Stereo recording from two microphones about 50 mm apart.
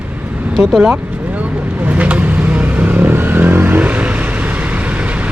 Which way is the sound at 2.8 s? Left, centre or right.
Right.